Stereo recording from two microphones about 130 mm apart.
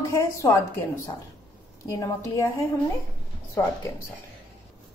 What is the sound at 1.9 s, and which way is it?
Speech, 25° left (ahead or behind).